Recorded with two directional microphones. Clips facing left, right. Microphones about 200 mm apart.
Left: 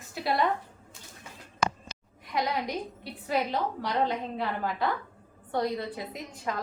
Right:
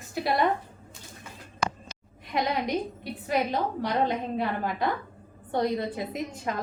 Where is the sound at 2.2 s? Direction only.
20° right (ahead or behind).